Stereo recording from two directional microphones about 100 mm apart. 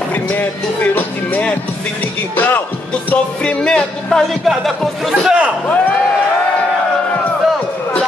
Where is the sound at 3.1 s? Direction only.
10° left (ahead or behind).